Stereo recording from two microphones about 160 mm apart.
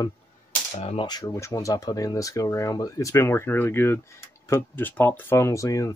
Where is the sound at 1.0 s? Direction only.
20° left (ahead or behind).